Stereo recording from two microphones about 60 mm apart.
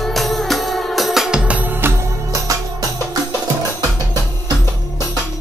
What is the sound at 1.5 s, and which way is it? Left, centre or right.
Music, right.